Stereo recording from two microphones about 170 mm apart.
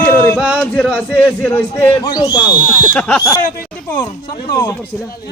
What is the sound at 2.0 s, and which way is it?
Speech, 25° left (ahead or behind).